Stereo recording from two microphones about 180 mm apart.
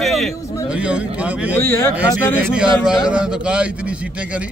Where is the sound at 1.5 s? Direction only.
15° left (ahead or behind).